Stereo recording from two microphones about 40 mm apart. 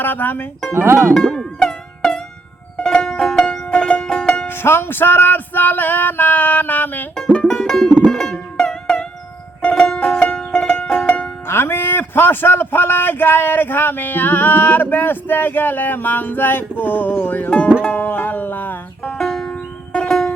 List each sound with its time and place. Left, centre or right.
0.0 s speech: left
0.7 s speech: right
1.1 s music: centre
3.7 s music: left
4.4 s a man's voice: left
7.4 s music: centre
11.4 s a man's voice: left
17.8 s music: left
19.1 s music: centre
19.5 s music: left
20.1 s music: centre